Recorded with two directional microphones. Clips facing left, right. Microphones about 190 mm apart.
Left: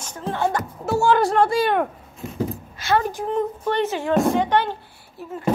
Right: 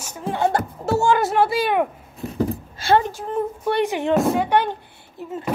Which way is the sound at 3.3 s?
10° right (ahead or behind).